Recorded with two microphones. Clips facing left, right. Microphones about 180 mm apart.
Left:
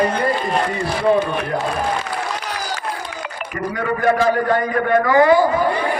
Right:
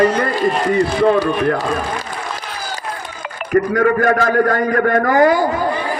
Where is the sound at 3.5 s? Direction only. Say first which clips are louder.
Right 9 dB; 45° right (ahead or behind).